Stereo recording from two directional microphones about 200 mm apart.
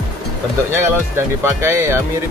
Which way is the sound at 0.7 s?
15° right (ahead or behind).